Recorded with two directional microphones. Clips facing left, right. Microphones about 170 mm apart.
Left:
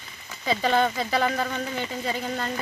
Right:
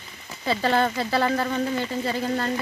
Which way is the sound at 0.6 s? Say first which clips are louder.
Even; 5° right (ahead or behind).